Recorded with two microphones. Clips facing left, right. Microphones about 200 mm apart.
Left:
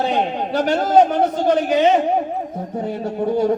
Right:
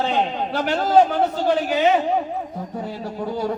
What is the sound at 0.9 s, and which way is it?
Speech, 20° left (ahead or behind).